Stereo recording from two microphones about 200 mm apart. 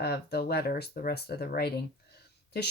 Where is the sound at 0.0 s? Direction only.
55° left (ahead or behind).